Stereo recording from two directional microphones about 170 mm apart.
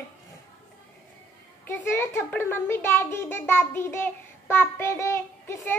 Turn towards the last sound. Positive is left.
turn(degrees=15)  # may be behind; listen again after turning